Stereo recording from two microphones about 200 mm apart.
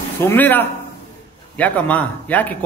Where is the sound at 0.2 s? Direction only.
10° left (ahead or behind).